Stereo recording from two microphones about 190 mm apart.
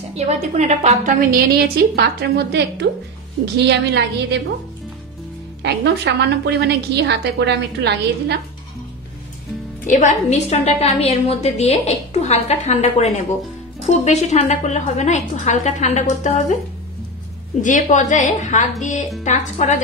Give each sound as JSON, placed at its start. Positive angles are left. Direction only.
{"t": 0.2, "sound": "a woman's voice", "side_deg": -35}
{"t": 1.5, "sound": "a woman's voice", "side_deg": -55}
{"t": 5.6, "sound": "a woman's voice", "side_deg": -60}
{"t": 9.8, "sound": "a woman's voice", "side_deg": 40}
{"t": 17.6, "sound": "a woman's voice", "side_deg": 40}